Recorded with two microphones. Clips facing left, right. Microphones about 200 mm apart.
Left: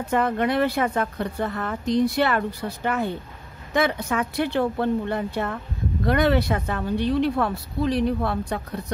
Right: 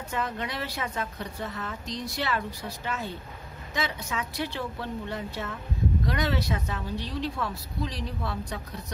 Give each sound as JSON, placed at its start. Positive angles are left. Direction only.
{"t": 0.1, "sound": "a woman's voice", "side_deg": 55}